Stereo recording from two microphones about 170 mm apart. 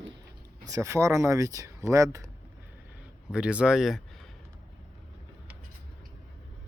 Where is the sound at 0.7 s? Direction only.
20° right (ahead or behind).